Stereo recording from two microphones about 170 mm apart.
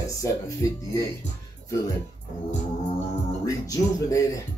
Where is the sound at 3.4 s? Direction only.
20° left (ahead or behind).